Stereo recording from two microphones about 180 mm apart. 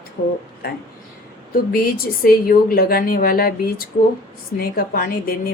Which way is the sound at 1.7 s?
55° left (ahead or behind).